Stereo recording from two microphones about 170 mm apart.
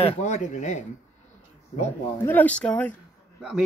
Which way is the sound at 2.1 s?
10° left (ahead or behind).